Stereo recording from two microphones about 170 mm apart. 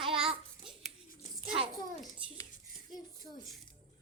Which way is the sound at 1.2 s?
45° left (ahead or behind).